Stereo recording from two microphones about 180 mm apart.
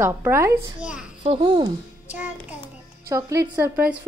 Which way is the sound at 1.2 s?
30° right (ahead or behind).